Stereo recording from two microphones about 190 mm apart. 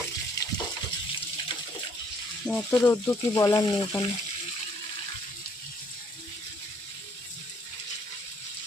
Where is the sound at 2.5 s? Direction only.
10° left (ahead or behind).